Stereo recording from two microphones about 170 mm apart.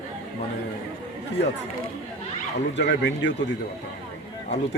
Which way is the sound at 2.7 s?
90° left.